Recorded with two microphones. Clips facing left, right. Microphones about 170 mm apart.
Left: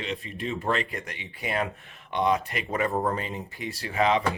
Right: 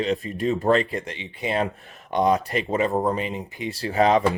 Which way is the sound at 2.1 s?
40° right (ahead or behind).